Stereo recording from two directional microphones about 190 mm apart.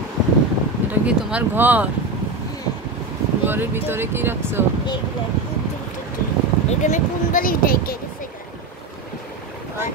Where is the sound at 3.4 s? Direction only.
10° right (ahead or behind).